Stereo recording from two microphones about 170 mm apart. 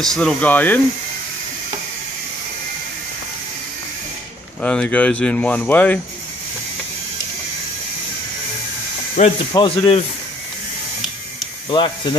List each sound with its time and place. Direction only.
0.0 s speech: 5° left (ahead or behind)
4.6 s speech: 5° left (ahead or behind)
9.2 s speech: 45° left (ahead or behind)
9.5 s speech: 30° left (ahead or behind)
11.7 s speech: 25° left (ahead or behind)